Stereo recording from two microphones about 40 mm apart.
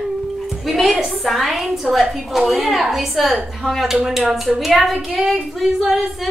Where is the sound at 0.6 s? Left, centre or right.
Centre.